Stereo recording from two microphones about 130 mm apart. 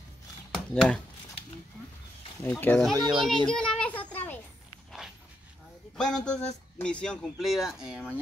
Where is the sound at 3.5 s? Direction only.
5° left (ahead or behind).